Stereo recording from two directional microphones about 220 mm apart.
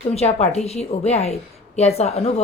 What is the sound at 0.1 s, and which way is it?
A woman's voice, 30° left (ahead or behind).